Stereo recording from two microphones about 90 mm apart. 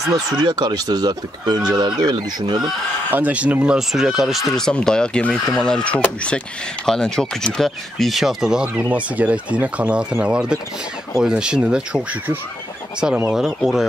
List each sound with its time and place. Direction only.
0.0 s speech: 5° right (ahead or behind)
0.4 s speech: 50° right (ahead or behind)
3.1 s speech: 20° right (ahead or behind)
4.6 s speech: 5° left (ahead or behind); by 12.2 s 10° right (ahead or behind)
13.3 s speech: 5° right (ahead or behind)